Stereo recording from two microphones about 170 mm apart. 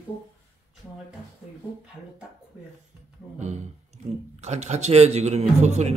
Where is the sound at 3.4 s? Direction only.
40° right (ahead or behind).